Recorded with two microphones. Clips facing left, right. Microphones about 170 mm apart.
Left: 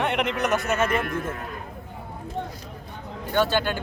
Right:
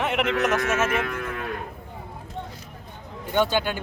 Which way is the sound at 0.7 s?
90° right.